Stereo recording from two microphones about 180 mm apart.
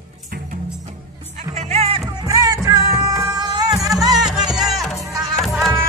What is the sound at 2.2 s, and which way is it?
Music, 15° right (ahead or behind).